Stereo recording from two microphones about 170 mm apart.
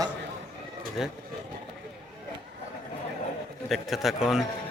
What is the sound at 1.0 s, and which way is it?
Speech, centre (ahead or behind).